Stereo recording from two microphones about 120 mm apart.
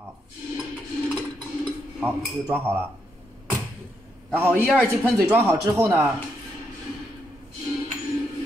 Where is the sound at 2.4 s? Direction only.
15° right (ahead or behind).